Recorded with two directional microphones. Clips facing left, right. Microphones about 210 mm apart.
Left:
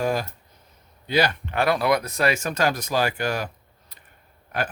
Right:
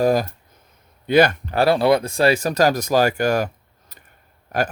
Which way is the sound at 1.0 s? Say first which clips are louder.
Right 7 dB; 50° right (ahead or behind).